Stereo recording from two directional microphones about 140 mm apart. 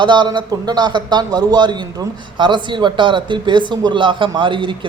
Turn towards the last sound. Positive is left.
turn(degrees=-35)  # may be behind; listen again after turning